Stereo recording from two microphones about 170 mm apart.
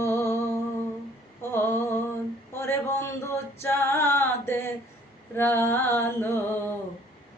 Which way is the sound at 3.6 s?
15° left (ahead or behind).